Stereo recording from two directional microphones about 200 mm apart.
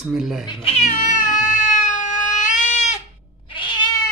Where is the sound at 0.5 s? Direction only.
30° left (ahead or behind).